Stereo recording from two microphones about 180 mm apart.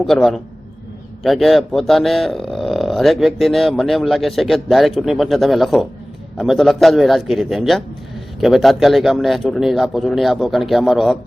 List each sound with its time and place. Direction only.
0.0 s speech: centre (ahead or behind)